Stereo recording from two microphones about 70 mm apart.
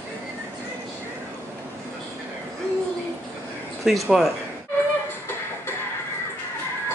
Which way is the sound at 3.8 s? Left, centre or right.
Centre.